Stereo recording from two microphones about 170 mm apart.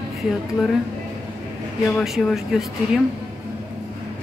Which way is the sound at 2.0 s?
Centre (ahead or behind).